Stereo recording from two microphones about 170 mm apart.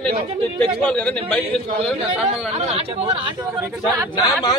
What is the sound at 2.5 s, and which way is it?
Speech, 40° right (ahead or behind).